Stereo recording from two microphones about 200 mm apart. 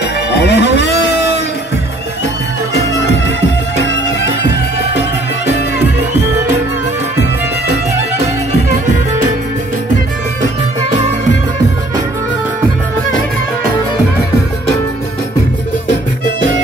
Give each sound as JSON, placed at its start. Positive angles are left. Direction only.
{"t": 0.3, "sound": "music", "side_deg": 60}
{"t": 3.8, "sound": "music", "side_deg": 60}